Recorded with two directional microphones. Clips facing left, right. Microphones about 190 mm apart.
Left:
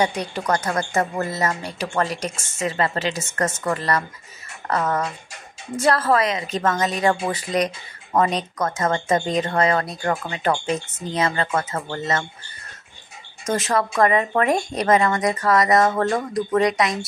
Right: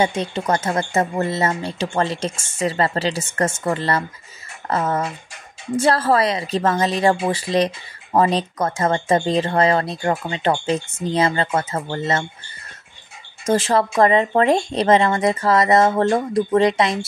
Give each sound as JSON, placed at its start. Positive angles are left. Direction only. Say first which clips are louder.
{"t": 0.0, "sound": "a woman's voice", "louder": "right 2 dB", "side_deg": -25}
{"t": 13.5, "sound": "a woman's voice", "louder": "right 4 dB", "side_deg": -30}